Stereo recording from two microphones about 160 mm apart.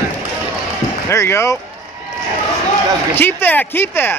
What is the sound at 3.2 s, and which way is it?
Speech, 10° left (ahead or behind).